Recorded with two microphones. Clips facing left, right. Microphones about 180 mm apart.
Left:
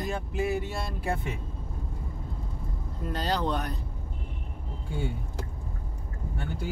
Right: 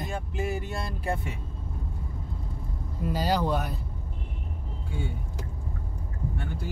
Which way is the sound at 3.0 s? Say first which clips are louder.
Right 3 dB; 5° right (ahead or behind).